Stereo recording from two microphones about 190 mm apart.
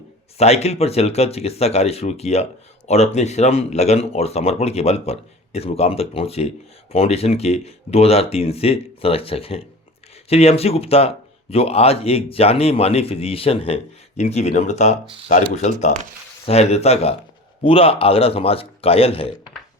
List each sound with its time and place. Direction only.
0.3 s speech: 35° left (ahead or behind)